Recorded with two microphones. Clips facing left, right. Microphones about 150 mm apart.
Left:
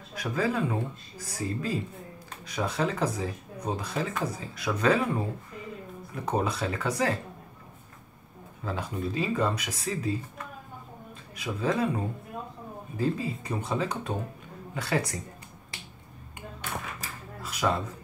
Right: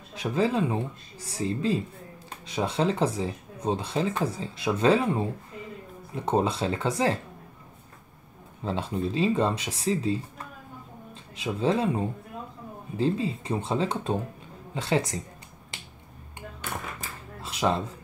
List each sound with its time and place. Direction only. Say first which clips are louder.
0.1 s speech: right 3 dB; 25° right (ahead or behind)
8.6 s speech: right 3 dB; 25° right (ahead or behind)
11.3 s speech: right 3 dB; 25° right (ahead or behind)
17.4 s a sound: right 2 dB; 25° right (ahead or behind)